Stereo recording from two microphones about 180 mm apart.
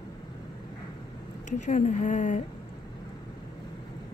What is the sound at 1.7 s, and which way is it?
Speech, 40° left (ahead or behind).